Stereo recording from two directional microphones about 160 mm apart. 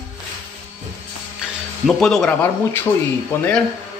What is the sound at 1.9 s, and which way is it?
Speech, centre (ahead or behind).